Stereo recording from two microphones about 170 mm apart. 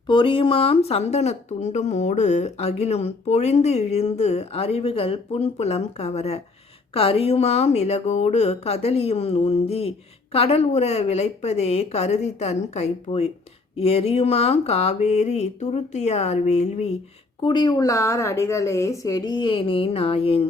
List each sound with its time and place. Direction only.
0.1 s speech: 30° left (ahead or behind)
17.4 s a woman's voice: 25° left (ahead or behind)